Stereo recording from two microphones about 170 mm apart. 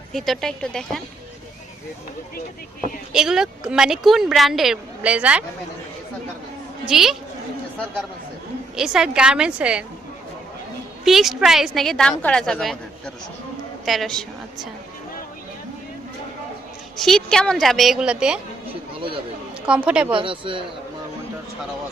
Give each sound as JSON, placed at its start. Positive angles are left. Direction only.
{"t": 0.1, "sound": "speech", "side_deg": 0}
{"t": 3.1, "sound": "speech", "side_deg": -5}
{"t": 6.8, "sound": "speech", "side_deg": 0}
{"t": 8.7, "sound": "speech", "side_deg": -5}
{"t": 11.0, "sound": "speech", "side_deg": 0}
{"t": 13.8, "sound": "a woman's voice", "side_deg": 0}
{"t": 17.0, "sound": "speech", "side_deg": 5}
{"t": 18.9, "sound": "speech", "side_deg": -30}
{"t": 19.6, "sound": "a woman's voice", "side_deg": -5}
{"t": 20.1, "sound": "a man's voice", "side_deg": -30}